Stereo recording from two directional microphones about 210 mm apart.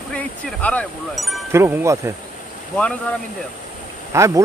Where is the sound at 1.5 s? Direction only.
10° right (ahead or behind).